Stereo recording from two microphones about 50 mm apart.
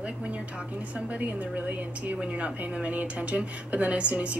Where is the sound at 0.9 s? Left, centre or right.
Right.